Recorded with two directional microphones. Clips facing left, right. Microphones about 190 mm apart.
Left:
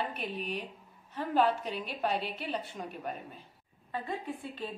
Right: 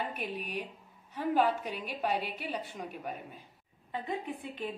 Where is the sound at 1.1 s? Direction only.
10° right (ahead or behind).